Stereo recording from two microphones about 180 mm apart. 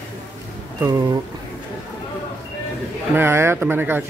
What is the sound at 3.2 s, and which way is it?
Speech, 15° right (ahead or behind).